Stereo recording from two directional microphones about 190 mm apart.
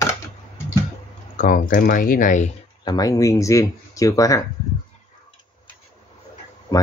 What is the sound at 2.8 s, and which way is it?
Speech, 20° left (ahead or behind).